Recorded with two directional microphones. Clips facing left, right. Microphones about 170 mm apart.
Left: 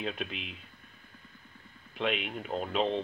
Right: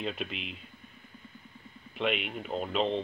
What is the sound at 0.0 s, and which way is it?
Speech, centre (ahead or behind).